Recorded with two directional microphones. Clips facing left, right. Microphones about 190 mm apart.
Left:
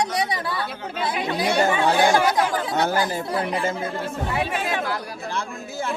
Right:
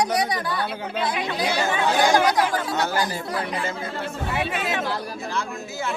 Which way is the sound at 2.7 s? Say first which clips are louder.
Left 2 dB; 50° left (ahead or behind).